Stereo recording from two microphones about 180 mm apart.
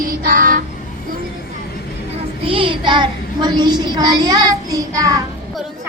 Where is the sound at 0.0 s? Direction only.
50° right (ahead or behind).